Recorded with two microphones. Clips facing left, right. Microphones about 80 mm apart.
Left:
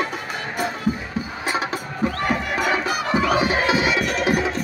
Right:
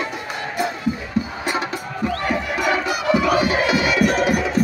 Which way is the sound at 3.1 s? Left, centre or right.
Left.